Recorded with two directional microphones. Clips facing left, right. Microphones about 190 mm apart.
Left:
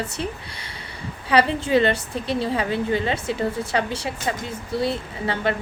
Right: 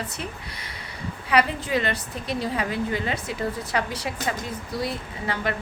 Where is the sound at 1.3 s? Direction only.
30° left (ahead or behind).